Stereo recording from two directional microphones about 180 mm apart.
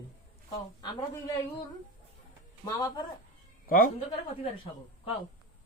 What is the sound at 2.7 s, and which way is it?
Speech, 25° left (ahead or behind).